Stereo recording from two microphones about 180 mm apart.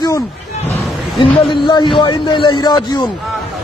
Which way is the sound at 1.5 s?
25° left (ahead or behind).